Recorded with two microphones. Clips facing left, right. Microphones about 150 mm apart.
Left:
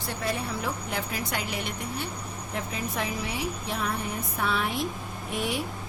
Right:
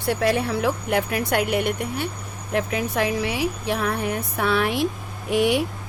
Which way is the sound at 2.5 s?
75° right (ahead or behind).